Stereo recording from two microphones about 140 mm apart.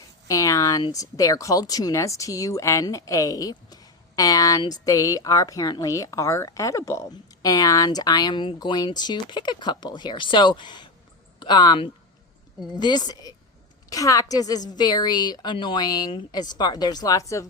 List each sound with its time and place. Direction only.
0.3 s speech: 25° left (ahead or behind)